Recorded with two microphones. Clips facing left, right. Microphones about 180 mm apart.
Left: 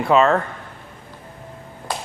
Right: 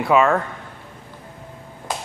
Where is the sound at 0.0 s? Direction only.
10° right (ahead or behind).